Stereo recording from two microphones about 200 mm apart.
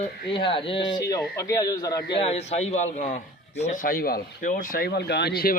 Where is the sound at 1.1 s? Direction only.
15° left (ahead or behind).